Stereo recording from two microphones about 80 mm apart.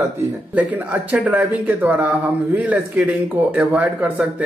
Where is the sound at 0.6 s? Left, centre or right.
Right.